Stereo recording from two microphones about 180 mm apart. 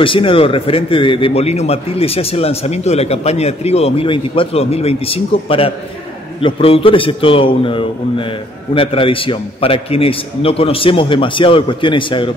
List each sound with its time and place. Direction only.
0.0 s a man's voice: 30° left (ahead or behind)